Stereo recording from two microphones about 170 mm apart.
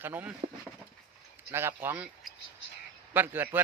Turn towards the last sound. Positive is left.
turn(degrees=-10)  # may be behind; listen again after turning